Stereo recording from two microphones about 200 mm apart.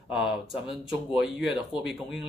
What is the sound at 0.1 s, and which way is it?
A man's voice, centre (ahead or behind).